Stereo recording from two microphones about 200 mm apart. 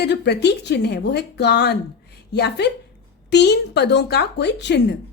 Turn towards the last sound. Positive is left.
turn(degrees=60)  # may be behind; listen again after turning